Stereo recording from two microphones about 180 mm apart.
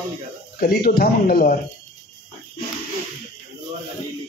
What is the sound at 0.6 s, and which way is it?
Speech, 55° left (ahead or behind).